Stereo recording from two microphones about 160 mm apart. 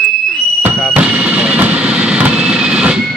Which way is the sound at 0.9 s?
10° right (ahead or behind).